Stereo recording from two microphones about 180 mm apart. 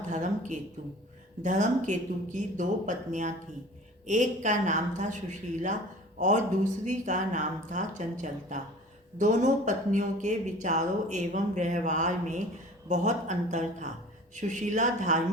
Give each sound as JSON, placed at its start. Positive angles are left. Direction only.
{"t": 0.1, "sound": "speech", "side_deg": -40}